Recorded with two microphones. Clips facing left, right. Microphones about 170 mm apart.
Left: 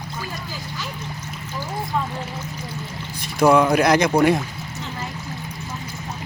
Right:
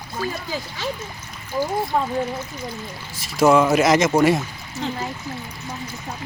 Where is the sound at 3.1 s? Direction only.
5° right (ahead or behind).